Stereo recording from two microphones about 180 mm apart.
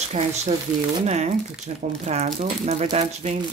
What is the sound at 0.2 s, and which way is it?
Speech, 45° right (ahead or behind).